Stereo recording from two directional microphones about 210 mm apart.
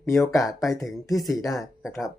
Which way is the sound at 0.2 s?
Centre (ahead or behind).